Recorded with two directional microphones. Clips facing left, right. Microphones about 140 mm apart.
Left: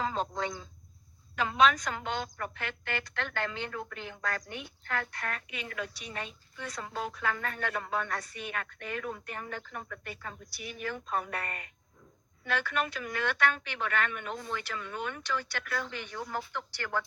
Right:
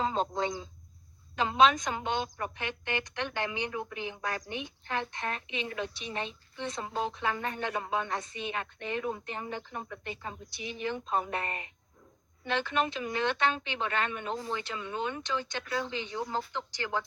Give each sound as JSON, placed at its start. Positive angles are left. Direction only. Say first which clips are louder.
{"t": 0.0, "sound": "a woman's voice", "louder": "right 2 dB", "side_deg": -25}